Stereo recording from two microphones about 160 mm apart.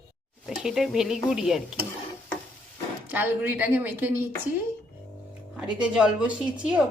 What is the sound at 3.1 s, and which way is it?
A woman's voice, 10° right (ahead or behind).